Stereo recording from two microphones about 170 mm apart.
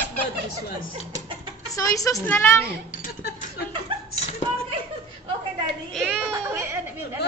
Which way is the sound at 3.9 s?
30° right (ahead or behind).